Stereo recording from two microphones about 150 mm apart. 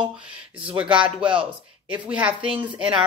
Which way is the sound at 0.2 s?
35° right (ahead or behind).